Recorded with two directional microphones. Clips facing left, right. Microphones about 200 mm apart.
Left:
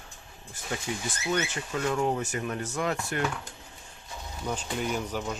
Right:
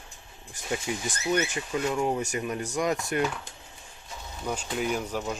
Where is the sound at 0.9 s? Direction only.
15° right (ahead or behind).